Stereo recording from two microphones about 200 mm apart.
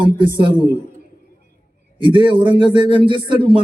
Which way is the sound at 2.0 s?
25° right (ahead or behind).